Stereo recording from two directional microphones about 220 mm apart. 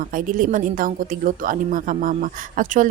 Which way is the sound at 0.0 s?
40° right (ahead or behind).